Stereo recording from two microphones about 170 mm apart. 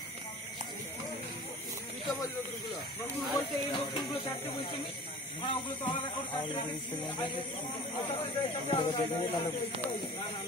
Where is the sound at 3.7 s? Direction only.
30° left (ahead or behind).